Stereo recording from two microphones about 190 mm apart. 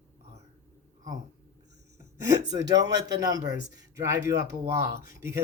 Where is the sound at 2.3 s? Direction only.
20° right (ahead or behind).